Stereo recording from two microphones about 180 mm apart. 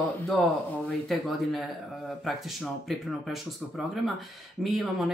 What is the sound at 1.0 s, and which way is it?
Speech, centre (ahead or behind).